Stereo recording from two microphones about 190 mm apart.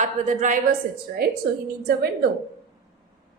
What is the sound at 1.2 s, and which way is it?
Speech, 55° right (ahead or behind).